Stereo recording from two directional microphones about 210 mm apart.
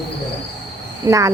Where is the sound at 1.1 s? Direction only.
15° right (ahead or behind).